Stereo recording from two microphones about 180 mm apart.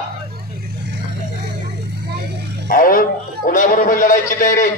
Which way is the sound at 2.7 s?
50° left (ahead or behind).